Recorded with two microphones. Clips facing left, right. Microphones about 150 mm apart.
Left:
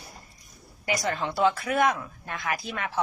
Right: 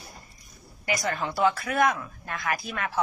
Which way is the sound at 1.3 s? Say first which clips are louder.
Left 1 dB; 25° left (ahead or behind).